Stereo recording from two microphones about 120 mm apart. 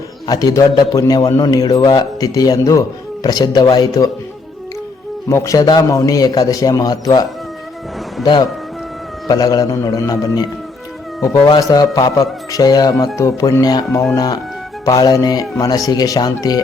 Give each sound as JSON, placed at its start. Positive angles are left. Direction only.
{"t": 0.3, "sound": "a man's voice", "side_deg": 30}
{"t": 5.3, "sound": "a man's voice", "side_deg": 25}